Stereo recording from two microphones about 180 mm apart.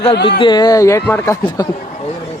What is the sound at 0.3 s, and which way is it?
Speech, 25° left (ahead or behind).